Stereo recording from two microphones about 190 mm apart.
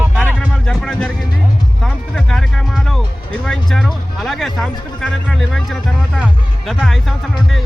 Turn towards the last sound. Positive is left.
turn(degrees=0)  # may be behind; listen again after turning